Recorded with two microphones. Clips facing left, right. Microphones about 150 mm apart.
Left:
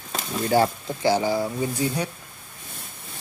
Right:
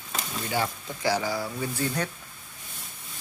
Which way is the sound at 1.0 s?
25° left (ahead or behind).